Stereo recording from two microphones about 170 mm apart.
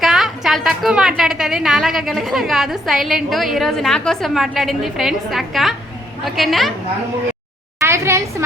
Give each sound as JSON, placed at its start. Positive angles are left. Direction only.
{"t": 0.0, "sound": "a woman's voice", "side_deg": 0}
{"t": 7.8, "sound": "a woman's voice", "side_deg": -15}